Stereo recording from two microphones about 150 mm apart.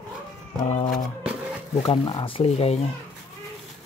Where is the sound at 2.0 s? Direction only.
30° left (ahead or behind).